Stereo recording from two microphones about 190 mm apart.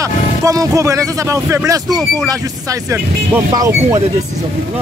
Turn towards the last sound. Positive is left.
turn(degrees=-20)  # may be behind; listen again after turning